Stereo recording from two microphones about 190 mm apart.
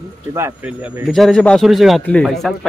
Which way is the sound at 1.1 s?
5° left (ahead or behind).